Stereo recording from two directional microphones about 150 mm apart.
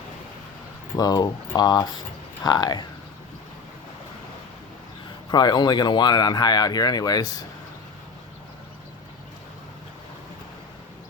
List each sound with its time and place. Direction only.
0.9 s speech: 25° left (ahead or behind)
5.3 s speech: 30° left (ahead or behind)